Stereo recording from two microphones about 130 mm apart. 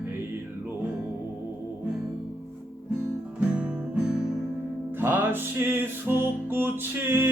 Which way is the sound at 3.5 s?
10° right (ahead or behind).